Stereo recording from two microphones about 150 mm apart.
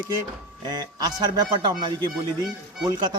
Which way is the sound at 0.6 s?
25° right (ahead or behind).